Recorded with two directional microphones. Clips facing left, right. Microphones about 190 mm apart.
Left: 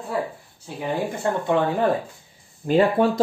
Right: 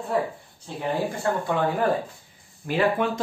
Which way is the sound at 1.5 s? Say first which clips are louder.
Left 4 dB; 20° left (ahead or behind).